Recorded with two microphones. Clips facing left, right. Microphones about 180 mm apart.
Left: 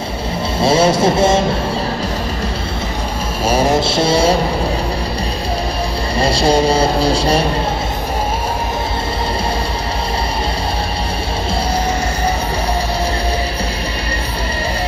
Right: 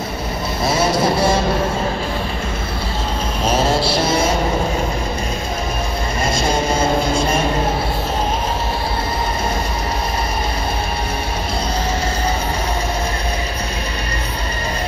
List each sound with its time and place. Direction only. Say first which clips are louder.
0.6 s vehicle: left 5 dB; 30° left (ahead or behind)
3.4 s a sound: left 3 dB; 15° left (ahead or behind); by 4.4 s 30° left (ahead or behind)
6.1 s speech: left 6 dB; 35° left (ahead or behind)